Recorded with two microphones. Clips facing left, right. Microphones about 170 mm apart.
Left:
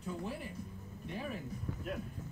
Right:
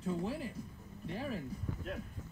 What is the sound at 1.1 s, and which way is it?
Speech, 30° right (ahead or behind).